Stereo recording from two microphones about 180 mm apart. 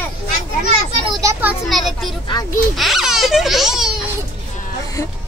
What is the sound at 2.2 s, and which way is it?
Speech, 25° left (ahead or behind).